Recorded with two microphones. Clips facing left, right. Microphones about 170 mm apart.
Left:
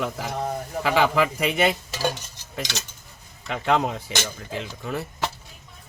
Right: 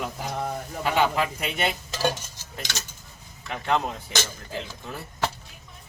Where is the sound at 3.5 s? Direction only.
85° left.